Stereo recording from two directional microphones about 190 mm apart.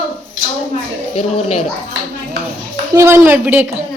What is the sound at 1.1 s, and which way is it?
Speech, 35° left (ahead or behind).